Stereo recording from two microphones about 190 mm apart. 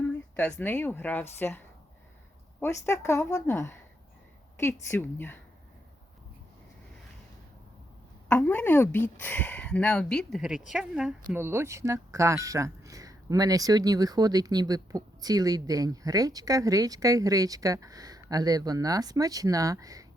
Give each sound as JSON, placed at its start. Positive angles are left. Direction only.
{"t": 0.0, "sound": "a woman's voice", "side_deg": 10}
{"t": 8.3, "sound": "speech", "side_deg": 5}